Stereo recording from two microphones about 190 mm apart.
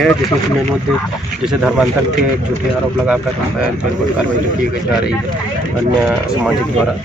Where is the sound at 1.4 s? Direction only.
5° right (ahead or behind).